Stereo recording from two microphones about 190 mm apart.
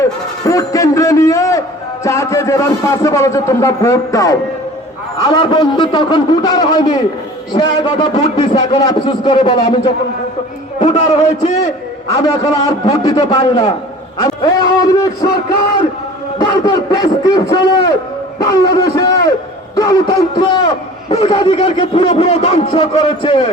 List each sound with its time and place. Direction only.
0.0 s a sound: 15° left (ahead or behind)
2.0 s a man's voice: 15° left (ahead or behind)
10.8 s a man's voice: 35° left (ahead or behind)
12.0 s a man's voice: 15° left (ahead or behind)
16.4 s a man's voice: 20° left (ahead or behind)
18.4 s a man's voice: 20° left (ahead or behind)